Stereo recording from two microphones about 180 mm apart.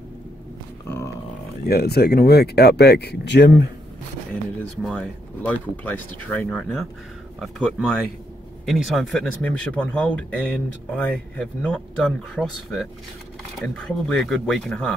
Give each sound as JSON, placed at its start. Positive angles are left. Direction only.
{"t": 0.8, "sound": "a sound", "side_deg": 15}
{"t": 1.7, "sound": "speech", "side_deg": 60}
{"t": 4.8, "sound": "speech", "side_deg": 10}